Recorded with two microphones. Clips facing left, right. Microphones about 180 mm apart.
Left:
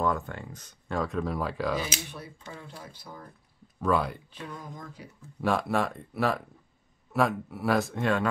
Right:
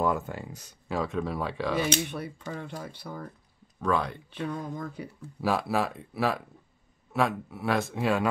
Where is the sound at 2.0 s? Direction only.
65° right (ahead or behind).